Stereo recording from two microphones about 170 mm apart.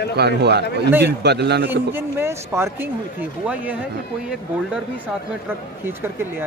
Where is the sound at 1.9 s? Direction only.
15° right (ahead or behind).